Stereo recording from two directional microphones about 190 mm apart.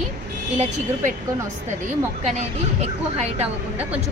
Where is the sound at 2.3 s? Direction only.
35° right (ahead or behind).